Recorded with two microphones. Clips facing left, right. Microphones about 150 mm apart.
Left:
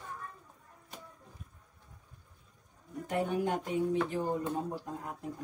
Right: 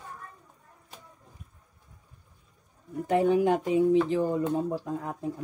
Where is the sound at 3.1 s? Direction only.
90° right.